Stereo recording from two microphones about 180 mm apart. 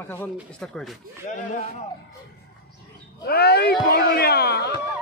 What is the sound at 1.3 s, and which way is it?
Speech, 45° left (ahead or behind).